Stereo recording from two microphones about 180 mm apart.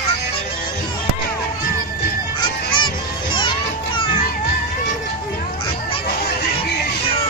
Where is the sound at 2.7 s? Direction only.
25° left (ahead or behind).